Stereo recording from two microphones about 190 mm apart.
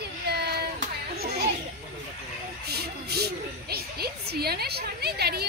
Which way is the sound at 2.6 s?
55° right (ahead or behind).